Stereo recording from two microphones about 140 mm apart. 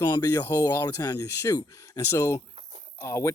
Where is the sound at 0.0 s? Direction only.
25° left (ahead or behind).